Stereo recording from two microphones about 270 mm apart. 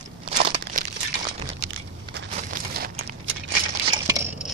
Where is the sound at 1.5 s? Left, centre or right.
Right.